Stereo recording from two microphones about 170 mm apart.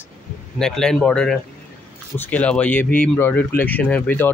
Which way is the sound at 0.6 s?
5° left (ahead or behind).